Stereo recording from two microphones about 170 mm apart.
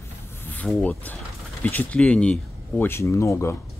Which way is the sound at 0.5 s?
5° left (ahead or behind).